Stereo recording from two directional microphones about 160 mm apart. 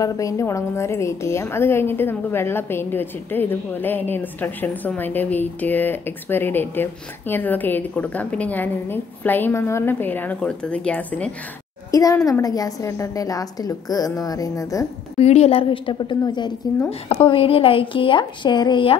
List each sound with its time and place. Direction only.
0.0 s a woman's voice: 20° left (ahead or behind)
11.9 s a child's voice: 20° left (ahead or behind)
15.1 s a woman's voice: 40° left (ahead or behind)